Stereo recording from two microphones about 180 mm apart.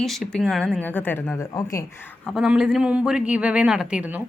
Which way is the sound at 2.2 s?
Centre (ahead or behind).